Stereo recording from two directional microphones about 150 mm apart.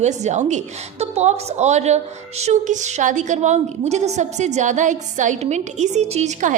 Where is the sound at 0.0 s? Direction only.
50° right (ahead or behind).